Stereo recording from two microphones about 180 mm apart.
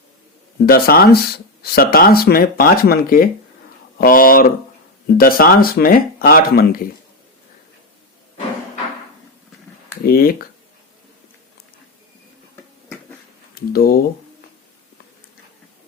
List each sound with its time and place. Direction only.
0.6 s speech: 55° left (ahead or behind)
10.0 s speech: 55° left (ahead or behind)
13.5 s speech: 55° left (ahead or behind)